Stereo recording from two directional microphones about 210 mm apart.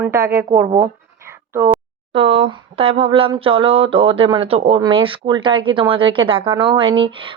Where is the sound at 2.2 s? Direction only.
25° right (ahead or behind).